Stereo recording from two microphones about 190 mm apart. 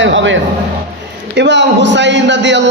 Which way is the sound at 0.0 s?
75° right (ahead or behind).